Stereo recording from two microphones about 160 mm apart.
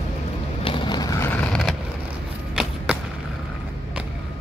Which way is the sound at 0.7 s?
30° left (ahead or behind).